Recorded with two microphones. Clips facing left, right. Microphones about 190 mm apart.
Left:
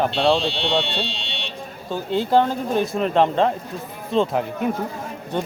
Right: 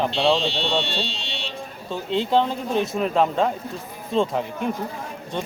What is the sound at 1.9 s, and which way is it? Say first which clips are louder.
Speech: left 2 dB; 5° left (ahead or behind).